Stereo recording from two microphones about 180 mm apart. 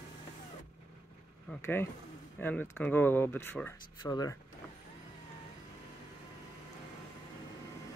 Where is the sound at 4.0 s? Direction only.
20° left (ahead or behind).